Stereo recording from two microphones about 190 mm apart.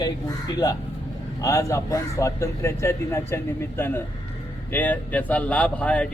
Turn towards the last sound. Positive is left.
turn(degrees=5)  # may be behind; listen again after turning